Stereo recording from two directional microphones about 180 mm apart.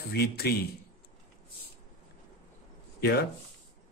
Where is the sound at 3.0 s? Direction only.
65° left (ahead or behind).